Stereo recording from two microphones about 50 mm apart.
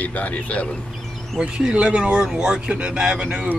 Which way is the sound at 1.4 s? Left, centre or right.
Centre.